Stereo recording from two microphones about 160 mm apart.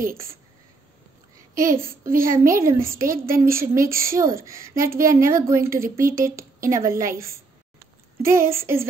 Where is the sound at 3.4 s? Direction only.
65° right (ahead or behind).